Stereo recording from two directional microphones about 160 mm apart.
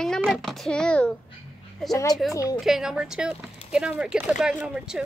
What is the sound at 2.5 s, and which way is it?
A woman's voice, 5° right (ahead or behind).